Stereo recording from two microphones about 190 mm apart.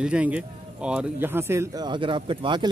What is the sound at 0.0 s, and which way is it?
Speech, 5° right (ahead or behind).